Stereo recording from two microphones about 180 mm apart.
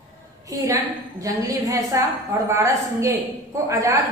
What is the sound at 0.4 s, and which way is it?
A woman's voice, 20° right (ahead or behind).